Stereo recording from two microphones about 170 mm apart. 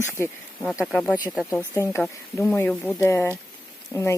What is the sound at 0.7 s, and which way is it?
Speech, centre (ahead or behind).